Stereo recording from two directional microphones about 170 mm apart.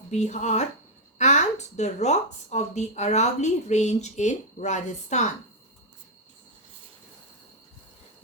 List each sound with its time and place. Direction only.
0.1 s a woman's voice: 45° left (ahead or behind)